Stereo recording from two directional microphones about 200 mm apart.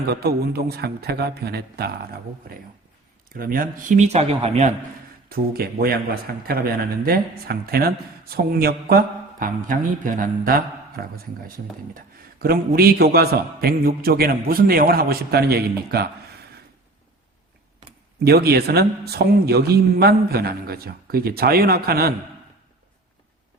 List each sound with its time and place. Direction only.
0.1 s a man's voice: 50° right (ahead or behind)
3.2 s speech: 45° right (ahead or behind)
5.3 s a man's voice: 50° right (ahead or behind)
18.2 s a man's voice: 50° right (ahead or behind)